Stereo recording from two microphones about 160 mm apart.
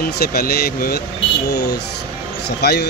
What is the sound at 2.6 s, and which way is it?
Speech, 90° left.